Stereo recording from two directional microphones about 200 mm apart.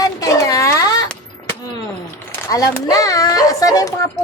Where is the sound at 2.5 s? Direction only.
15° left (ahead or behind).